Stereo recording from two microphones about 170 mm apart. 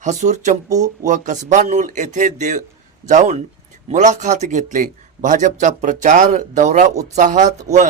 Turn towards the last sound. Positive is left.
turn(degrees=-45)  # may be behind; listen again after turning